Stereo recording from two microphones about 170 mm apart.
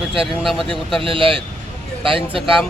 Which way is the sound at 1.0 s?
30° right (ahead or behind).